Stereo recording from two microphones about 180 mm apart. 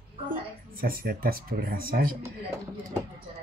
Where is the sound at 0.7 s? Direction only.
55° right (ahead or behind).